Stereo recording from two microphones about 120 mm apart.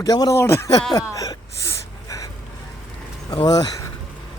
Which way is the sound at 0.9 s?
30° left (ahead or behind).